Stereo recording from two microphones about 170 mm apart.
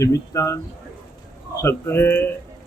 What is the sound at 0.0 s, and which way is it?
A man's voice, 15° left (ahead or behind).